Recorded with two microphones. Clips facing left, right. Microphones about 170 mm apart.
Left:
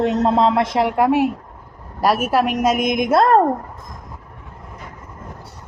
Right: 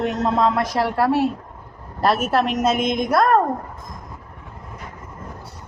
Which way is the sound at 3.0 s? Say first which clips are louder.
Left 3 dB; 25° left (ahead or behind).